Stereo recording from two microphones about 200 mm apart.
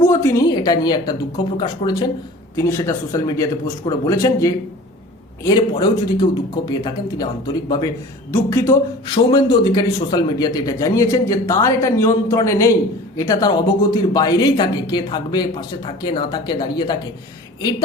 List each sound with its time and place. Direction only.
0.0 s a man's voice: 15° left (ahead or behind)